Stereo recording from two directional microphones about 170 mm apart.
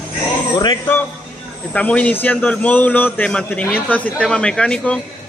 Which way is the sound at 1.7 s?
10° left (ahead or behind).